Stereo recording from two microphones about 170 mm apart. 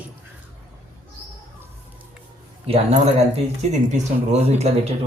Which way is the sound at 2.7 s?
35° right (ahead or behind).